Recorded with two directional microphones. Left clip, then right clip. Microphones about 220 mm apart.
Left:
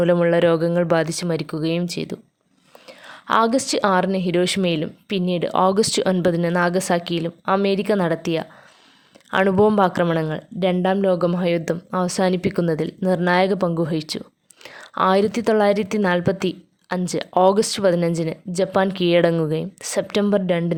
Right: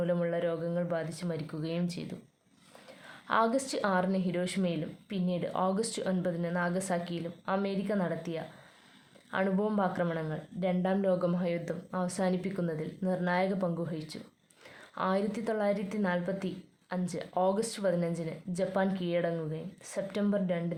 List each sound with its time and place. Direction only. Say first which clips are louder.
0.0 s a woman's voice: left 14 dB; 45° left (ahead or behind)